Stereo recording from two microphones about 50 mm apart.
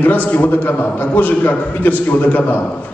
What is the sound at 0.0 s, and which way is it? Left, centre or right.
A man's voice, left.